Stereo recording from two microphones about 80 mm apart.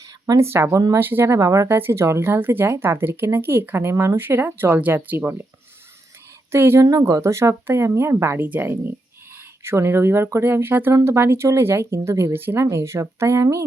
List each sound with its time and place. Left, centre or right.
0.0 s a sound: right
0.4 s speech: right
6.5 s speech: right